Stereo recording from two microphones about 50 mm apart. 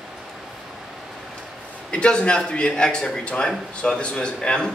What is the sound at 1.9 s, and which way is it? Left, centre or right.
A man's voice, centre.